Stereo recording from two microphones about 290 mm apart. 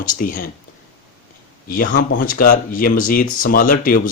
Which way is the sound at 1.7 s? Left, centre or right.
Left.